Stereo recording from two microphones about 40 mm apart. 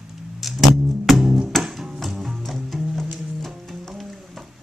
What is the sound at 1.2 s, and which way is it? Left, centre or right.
Music, centre.